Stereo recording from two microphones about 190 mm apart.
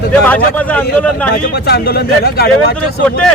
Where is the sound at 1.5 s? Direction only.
55° left (ahead or behind).